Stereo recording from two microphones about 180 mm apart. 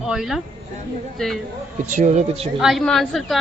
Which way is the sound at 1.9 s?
45° right (ahead or behind).